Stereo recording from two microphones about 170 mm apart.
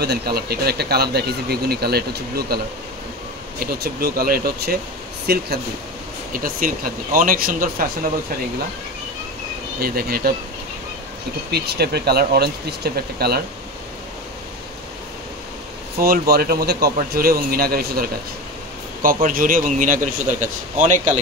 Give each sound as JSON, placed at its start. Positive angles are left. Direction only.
{"t": 0.0, "sound": "speech", "side_deg": -70}
{"t": 6.3, "sound": "speech", "side_deg": -55}
{"t": 9.8, "sound": "speech", "side_deg": -65}
{"t": 11.5, "sound": "speech", "side_deg": -70}
{"t": 16.0, "sound": "speech", "side_deg": -60}
{"t": 19.0, "sound": "speech", "side_deg": -55}